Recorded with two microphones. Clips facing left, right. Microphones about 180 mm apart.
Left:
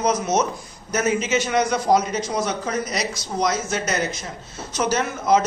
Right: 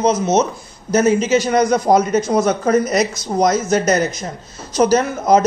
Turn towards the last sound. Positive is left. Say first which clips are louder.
# right 6 dB
turn(degrees=-40)  # may be behind; listen again after turning